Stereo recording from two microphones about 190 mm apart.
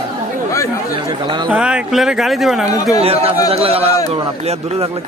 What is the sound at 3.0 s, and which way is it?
A man's voice, 30° right (ahead or behind).